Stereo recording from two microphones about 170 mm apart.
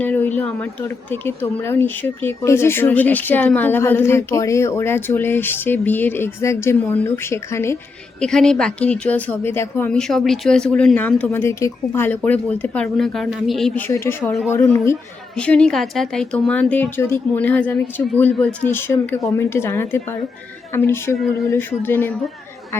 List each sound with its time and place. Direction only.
0.0 s a woman's voice: 10° left (ahead or behind)
8.2 s a woman's voice: 5° left (ahead or behind)